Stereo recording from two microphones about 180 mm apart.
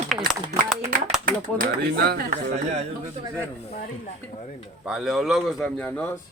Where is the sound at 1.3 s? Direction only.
55° right (ahead or behind).